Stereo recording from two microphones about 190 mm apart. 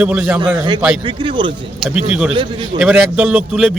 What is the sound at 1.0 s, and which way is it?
Speech, 25° right (ahead or behind).